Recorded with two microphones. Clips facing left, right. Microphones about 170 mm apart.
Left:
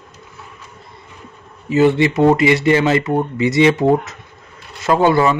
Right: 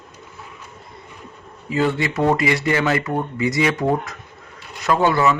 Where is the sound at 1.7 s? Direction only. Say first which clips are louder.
Left 7 dB; 25° left (ahead or behind).